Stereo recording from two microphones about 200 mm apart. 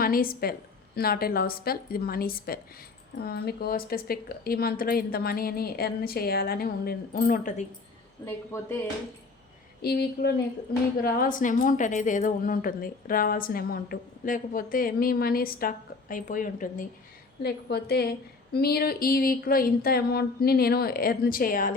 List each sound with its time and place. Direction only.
0.0 s a woman's voice: 45° left (ahead or behind)
8.2 s speech: 10° left (ahead or behind)
9.8 s a woman's voice: 55° left (ahead or behind)
17.4 s a woman's voice: 50° left (ahead or behind)